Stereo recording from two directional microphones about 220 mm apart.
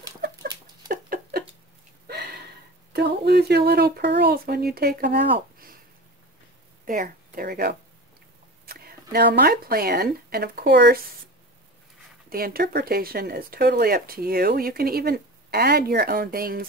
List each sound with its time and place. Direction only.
0.8 s patter: 40° right (ahead or behind)
2.0 s a sound: 45° right (ahead or behind)
2.9 s speech: 50° right (ahead or behind)
6.9 s speech: 40° right (ahead or behind)
12.3 s speech: 40° right (ahead or behind)